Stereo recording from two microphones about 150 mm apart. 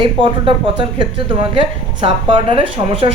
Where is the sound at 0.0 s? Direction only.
35° right (ahead or behind).